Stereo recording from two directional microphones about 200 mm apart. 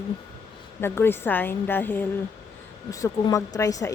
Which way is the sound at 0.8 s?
10° left (ahead or behind).